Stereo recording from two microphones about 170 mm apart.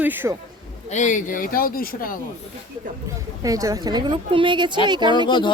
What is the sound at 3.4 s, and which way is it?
A woman's voice, 20° right (ahead or behind).